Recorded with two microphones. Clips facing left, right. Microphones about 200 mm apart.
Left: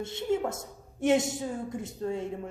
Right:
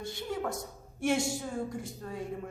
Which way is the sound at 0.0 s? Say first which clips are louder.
Left 6 dB; 25° left (ahead or behind).